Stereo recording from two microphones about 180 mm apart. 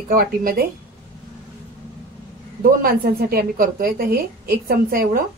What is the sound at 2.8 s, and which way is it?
A woman's voice, 55° right (ahead or behind).